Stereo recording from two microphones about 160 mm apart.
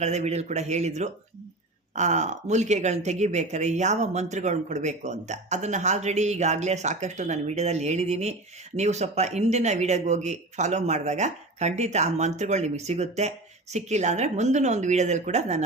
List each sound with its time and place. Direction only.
0.0 s speech: 45° right (ahead or behind)